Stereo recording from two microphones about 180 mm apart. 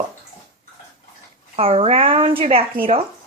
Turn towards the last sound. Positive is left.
turn(degrees=-30)  # may be behind; listen again after turning